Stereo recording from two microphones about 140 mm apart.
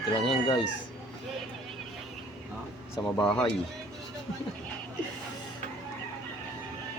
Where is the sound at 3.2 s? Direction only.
5° left (ahead or behind).